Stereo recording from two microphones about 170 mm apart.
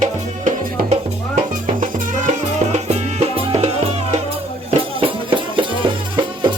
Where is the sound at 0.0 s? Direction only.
45° right (ahead or behind); by 6.5 s 30° right (ahead or behind).